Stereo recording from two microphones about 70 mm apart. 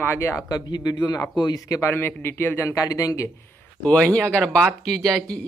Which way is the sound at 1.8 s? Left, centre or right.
Left.